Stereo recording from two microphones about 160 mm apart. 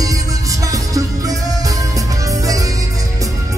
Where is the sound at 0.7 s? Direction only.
20° right (ahead or behind).